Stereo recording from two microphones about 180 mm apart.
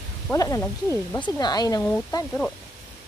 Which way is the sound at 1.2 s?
25° left (ahead or behind).